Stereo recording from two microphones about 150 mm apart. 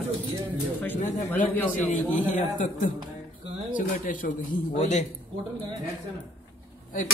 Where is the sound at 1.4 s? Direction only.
10° left (ahead or behind).